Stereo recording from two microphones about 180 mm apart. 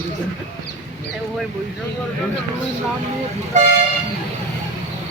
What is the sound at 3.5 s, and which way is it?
Speech, 40° right (ahead or behind).